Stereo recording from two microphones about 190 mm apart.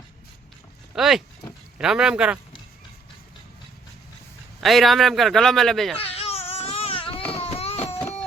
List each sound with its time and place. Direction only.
0.9 s a man's voice: centre (ahead or behind)
4.6 s a man's voice: centre (ahead or behind)
6.0 s baby cry: 30° left (ahead or behind)